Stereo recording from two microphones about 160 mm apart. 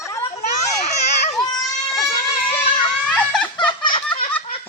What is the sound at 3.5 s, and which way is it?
Belly laugh, 30° left (ahead or behind).